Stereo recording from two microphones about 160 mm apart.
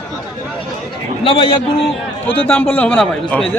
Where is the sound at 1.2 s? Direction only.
30° left (ahead or behind).